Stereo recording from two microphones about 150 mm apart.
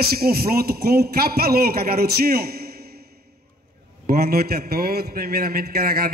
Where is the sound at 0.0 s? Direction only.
90° right.